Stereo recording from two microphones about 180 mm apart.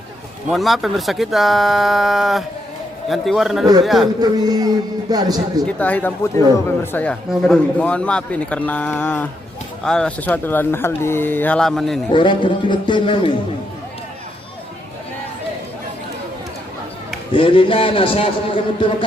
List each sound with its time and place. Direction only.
0.5 s speech: centre (ahead or behind)
4.2 s a man's voice: 20° right (ahead or behind)
5.6 s speech: 10° left (ahead or behind)
12.1 s a man's voice: 25° left (ahead or behind)
17.3 s a man's voice: 30° left (ahead or behind)